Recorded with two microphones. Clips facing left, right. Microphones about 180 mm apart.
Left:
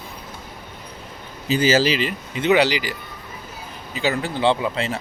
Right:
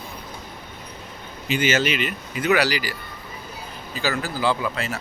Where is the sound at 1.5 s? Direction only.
35° left (ahead or behind).